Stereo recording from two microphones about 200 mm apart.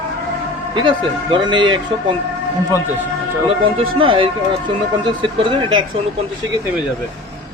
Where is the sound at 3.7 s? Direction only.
25° right (ahead or behind).